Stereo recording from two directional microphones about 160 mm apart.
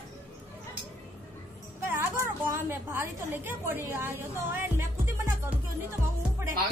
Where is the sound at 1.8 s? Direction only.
15° right (ahead or behind).